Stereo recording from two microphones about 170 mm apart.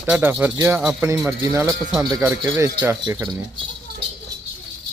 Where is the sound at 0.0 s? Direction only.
10° right (ahead or behind).